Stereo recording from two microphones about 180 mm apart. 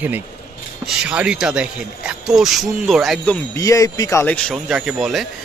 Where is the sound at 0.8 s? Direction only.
5° right (ahead or behind).